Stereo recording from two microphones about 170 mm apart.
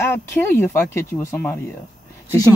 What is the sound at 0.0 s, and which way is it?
Speech, 10° left (ahead or behind).